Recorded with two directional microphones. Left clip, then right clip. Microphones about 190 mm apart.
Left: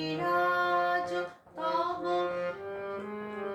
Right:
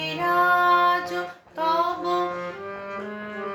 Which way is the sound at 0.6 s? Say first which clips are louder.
Right 9 dB; 10° right (ahead or behind).